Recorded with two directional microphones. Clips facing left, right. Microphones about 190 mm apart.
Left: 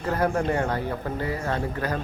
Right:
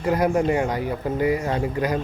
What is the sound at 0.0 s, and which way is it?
A man's voice, 10° right (ahead or behind).